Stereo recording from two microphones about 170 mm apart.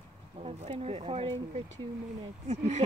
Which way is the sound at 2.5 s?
40° right (ahead or behind).